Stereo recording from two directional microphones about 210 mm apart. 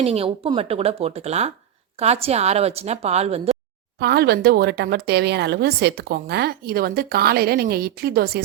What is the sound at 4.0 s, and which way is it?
Speech, 50° right (ahead or behind).